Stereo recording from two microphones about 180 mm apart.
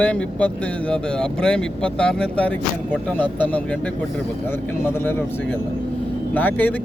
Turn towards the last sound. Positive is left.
turn(degrees=10)  # may be behind; listen again after turning